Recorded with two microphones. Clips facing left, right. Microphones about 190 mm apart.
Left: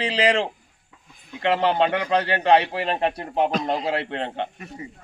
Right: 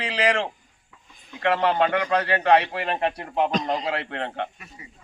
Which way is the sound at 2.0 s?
25° left (ahead or behind).